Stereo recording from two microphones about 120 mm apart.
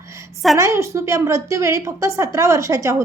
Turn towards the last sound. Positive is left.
turn(degrees=-25)  # may be behind; listen again after turning